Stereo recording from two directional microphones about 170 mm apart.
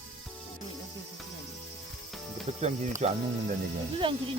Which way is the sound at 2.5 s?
35° right (ahead or behind).